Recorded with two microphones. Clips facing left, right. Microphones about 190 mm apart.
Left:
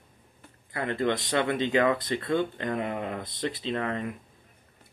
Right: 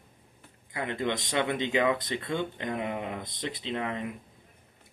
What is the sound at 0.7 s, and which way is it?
Speech, 20° right (ahead or behind).